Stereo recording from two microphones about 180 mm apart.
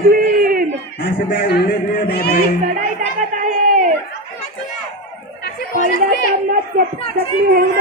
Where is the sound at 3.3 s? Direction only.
45° right (ahead or behind).